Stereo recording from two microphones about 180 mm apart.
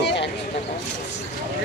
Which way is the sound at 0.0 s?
75° left (ahead or behind).